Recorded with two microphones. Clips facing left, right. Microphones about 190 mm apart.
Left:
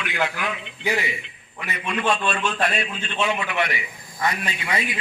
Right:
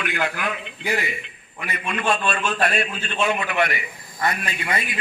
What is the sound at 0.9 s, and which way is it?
A man's voice, 50° right (ahead or behind).